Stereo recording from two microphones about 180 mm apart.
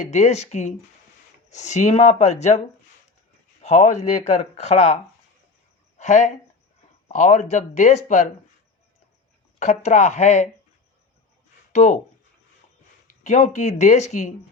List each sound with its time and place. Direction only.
0.1 s speech: 40° left (ahead or behind)
3.6 s speech: 40° left (ahead or behind)
6.0 s speech: 40° left (ahead or behind)
9.6 s speech: 40° left (ahead or behind)
11.7 s speech: 40° left (ahead or behind)
13.2 s speech: 40° left (ahead or behind)